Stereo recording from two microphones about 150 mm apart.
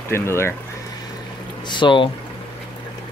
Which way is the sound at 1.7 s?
35° left (ahead or behind).